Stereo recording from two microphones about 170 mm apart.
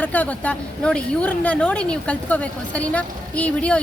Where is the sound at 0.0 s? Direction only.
10° left (ahead or behind).